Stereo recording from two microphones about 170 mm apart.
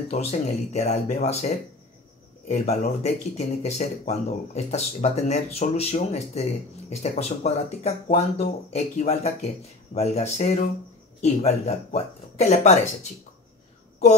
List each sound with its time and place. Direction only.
0.1 s speech: 40° left (ahead or behind)
2.6 s speech: 40° left (ahead or behind)